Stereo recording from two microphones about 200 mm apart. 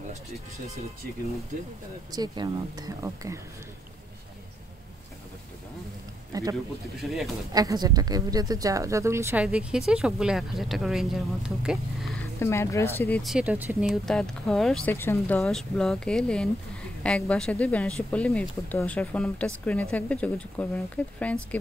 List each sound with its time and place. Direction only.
2.1 s speech: 20° right (ahead or behind)
6.3 s speech: 20° right (ahead or behind)
7.0 s speech: centre (ahead or behind)
7.5 s a woman's voice: 20° right (ahead or behind); by 12.2 s 5° right (ahead or behind)
12.4 s speech: 15° left (ahead or behind)